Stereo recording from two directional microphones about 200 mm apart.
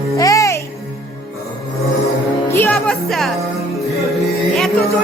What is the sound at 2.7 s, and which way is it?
Music, centre (ahead or behind).